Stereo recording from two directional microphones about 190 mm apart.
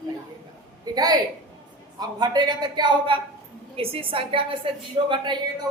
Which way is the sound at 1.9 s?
20° right (ahead or behind).